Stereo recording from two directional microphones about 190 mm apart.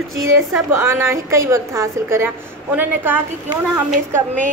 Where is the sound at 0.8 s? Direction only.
15° right (ahead or behind).